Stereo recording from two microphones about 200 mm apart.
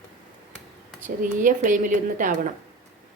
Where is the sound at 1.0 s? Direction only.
40° right (ahead or behind).